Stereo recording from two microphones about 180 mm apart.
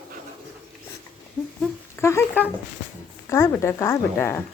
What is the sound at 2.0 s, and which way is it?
Speech, 15° left (ahead or behind).